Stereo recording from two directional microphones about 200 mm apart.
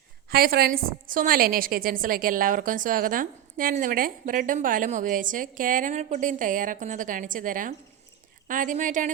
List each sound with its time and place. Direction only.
0.3 s a woman's voice: 50° right (ahead or behind)